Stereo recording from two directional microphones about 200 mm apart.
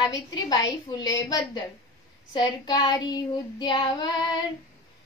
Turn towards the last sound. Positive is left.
turn(degrees=20)  # may be behind; listen again after turning